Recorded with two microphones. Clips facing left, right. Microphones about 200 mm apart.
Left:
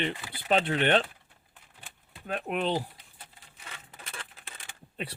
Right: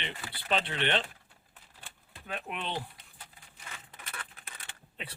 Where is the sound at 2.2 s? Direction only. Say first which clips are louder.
Left 8 dB; 40° left (ahead or behind).